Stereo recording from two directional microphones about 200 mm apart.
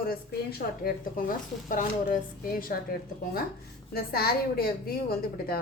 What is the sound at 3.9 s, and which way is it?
A woman's voice, 50° left (ahead or behind).